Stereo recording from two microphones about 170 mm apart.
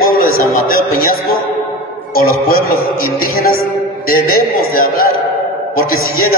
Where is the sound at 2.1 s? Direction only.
60° left (ahead or behind).